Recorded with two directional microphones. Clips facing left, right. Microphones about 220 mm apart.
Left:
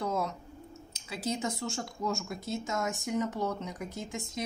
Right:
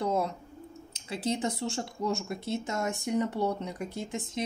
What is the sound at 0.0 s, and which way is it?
Clicking, 30° right (ahead or behind).